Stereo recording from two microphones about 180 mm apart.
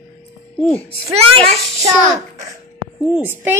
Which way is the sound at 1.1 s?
35° right (ahead or behind).